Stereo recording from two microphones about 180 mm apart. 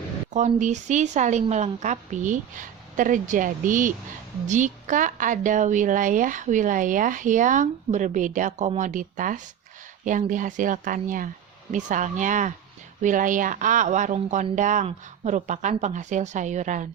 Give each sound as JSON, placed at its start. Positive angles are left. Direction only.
{"t": 0.3, "sound": "a woman's voice", "side_deg": -40}